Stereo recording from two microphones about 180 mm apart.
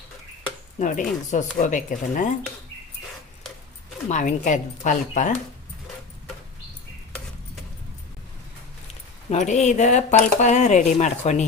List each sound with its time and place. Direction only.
0.8 s speech: 45° left (ahead or behind)
4.1 s speech: 45° left (ahead or behind)
9.3 s speech: 40° left (ahead or behind)